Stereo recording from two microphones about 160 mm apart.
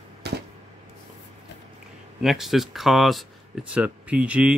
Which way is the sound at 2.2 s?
Centre (ahead or behind).